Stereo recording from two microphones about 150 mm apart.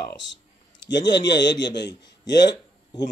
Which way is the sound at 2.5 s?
25° left (ahead or behind).